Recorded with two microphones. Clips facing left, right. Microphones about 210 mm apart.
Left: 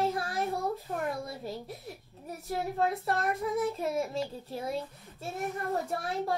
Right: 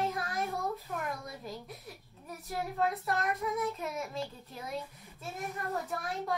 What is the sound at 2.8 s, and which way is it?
Child singing, 30° left (ahead or behind).